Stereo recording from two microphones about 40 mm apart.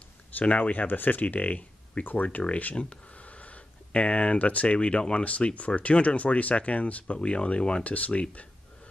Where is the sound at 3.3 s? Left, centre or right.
Left.